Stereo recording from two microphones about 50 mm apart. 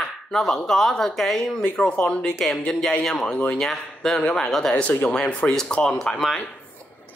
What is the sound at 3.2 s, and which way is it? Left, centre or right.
Speech, left.